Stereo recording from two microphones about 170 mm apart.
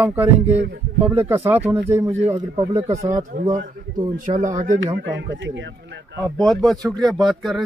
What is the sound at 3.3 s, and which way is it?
Speech, 50° right (ahead or behind).